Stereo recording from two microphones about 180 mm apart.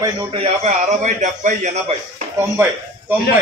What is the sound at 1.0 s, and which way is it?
Speech, 45° right (ahead or behind).